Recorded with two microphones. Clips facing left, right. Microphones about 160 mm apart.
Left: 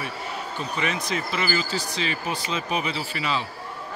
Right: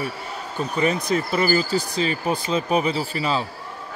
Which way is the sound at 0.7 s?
40° right (ahead or behind).